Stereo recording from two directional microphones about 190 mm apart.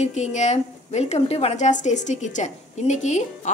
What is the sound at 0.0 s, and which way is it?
A woman's voice, 40° left (ahead or behind).